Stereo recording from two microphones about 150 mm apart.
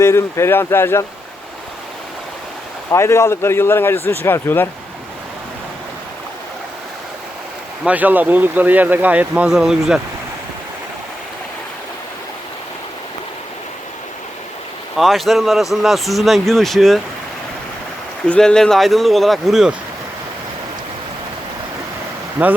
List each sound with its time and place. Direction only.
0.0 s a man's voice: 20° left (ahead or behind)
2.9 s a man's voice: 20° left (ahead or behind)
7.9 s speech: 10° right (ahead or behind)
14.9 s speech: centre (ahead or behind)
18.3 s speech: 5° left (ahead or behind)
22.4 s speech: 10° right (ahead or behind)